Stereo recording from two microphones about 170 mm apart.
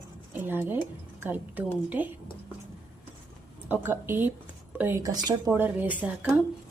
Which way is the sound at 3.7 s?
10° right (ahead or behind).